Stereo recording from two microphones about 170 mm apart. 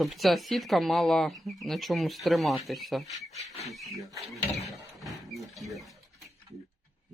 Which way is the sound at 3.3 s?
40° left (ahead or behind).